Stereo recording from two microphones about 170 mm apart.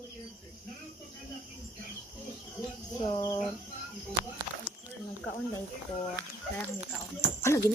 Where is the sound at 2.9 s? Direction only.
25° left (ahead or behind).